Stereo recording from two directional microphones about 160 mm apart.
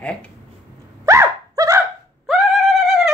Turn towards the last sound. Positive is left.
turn(degrees=0)  # may be behind; listen again after turning